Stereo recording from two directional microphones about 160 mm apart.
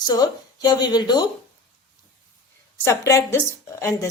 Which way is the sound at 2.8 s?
20° left (ahead or behind).